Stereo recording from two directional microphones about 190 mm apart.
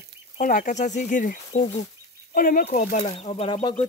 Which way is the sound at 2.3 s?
50° left (ahead or behind).